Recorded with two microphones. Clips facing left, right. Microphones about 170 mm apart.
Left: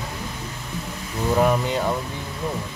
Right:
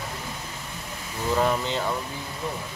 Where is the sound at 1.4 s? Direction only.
15° left (ahead or behind).